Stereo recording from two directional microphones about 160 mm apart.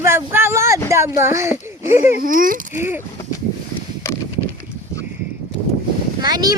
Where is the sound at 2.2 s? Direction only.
60° right (ahead or behind).